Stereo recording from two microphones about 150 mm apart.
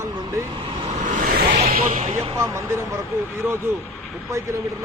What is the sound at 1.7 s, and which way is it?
Speech, 65° right (ahead or behind).